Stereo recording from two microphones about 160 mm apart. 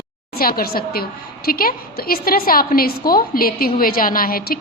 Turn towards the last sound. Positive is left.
turn(degrees=65)  # may be behind; listen again after turning